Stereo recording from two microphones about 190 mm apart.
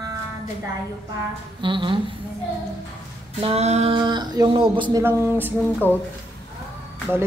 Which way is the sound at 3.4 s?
35° right (ahead or behind).